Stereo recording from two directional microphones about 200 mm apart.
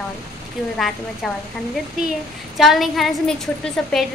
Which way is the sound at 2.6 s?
Centre (ahead or behind).